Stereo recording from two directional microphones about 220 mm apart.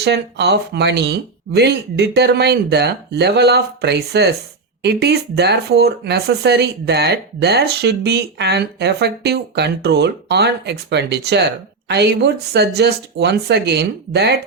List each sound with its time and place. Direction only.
0.0 s speech: 50° right (ahead or behind)